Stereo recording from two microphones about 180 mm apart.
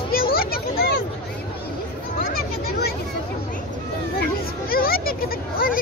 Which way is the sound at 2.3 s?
60° left (ahead or behind).